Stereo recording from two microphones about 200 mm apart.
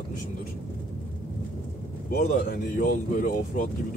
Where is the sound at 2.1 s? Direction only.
45° left (ahead or behind).